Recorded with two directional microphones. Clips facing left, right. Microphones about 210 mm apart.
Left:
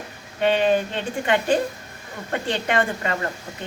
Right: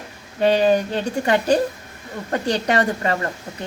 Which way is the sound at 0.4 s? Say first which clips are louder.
Right 3 dB; 40° right (ahead or behind).